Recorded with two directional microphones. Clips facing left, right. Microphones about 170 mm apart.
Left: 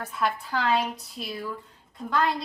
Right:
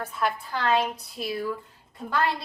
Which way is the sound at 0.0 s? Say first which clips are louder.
Even; centre (ahead or behind).